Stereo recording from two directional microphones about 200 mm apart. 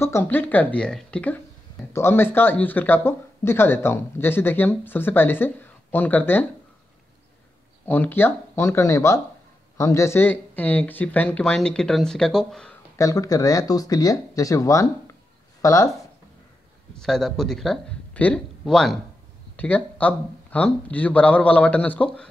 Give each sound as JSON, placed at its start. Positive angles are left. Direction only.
{"t": 0.0, "sound": "speech", "side_deg": 10}
{"t": 7.8, "sound": "speech", "side_deg": 10}
{"t": 12.9, "sound": "speech", "side_deg": 15}
{"t": 16.9, "sound": "speech", "side_deg": 0}